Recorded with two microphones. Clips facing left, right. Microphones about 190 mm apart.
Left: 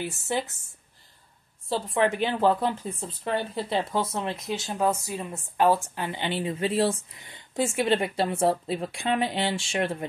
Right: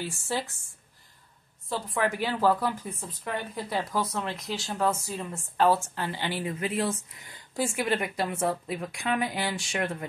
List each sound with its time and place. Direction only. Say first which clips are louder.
0.0 s speech: left 3 dB; 20° left (ahead or behind)
1.7 s speech: left 4 dB; 25° left (ahead or behind)